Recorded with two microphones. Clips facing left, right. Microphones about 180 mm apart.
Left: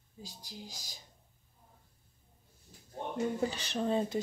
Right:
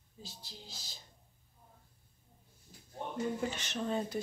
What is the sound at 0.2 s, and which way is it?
Speech, 15° left (ahead or behind).